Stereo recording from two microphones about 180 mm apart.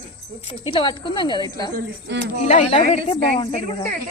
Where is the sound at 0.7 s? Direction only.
25° left (ahead or behind).